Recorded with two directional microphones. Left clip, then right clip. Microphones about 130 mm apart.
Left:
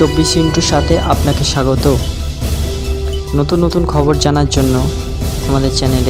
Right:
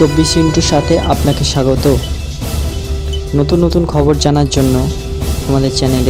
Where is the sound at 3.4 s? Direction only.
Centre (ahead or behind).